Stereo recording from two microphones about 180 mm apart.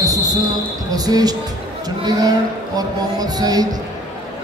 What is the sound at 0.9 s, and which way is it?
Speech, 20° right (ahead or behind).